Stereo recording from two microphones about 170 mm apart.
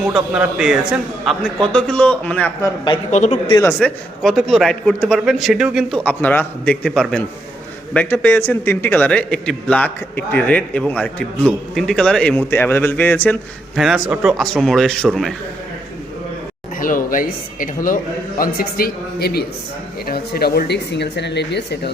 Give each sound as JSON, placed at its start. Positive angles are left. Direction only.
{"t": 0.0, "sound": "a man's voice", "side_deg": -5}
{"t": 3.1, "sound": "speech", "side_deg": 45}
{"t": 3.8, "sound": "a man's voice", "side_deg": 0}
{"t": 6.0, "sound": "a man's voice", "side_deg": 10}
{"t": 13.7, "sound": "a man's voice", "side_deg": 0}
{"t": 16.8, "sound": "a man's voice", "side_deg": 55}